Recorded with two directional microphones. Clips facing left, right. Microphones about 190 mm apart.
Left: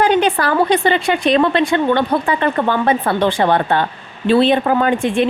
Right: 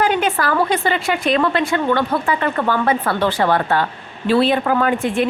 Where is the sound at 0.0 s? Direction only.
30° left (ahead or behind).